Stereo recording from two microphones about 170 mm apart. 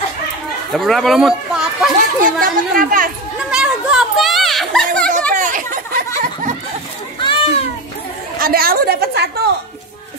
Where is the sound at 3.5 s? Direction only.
5° right (ahead or behind).